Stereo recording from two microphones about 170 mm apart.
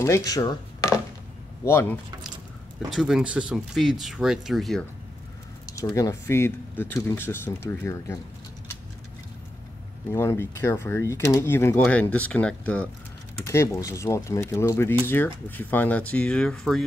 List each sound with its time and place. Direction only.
0.0 s dishes: 20° left (ahead or behind)
1.6 s speech: 15° left (ahead or behind)
2.9 s speech: centre (ahead or behind)
5.7 s speech: 20° left (ahead or behind)
10.1 s speech: 15° left (ahead or behind)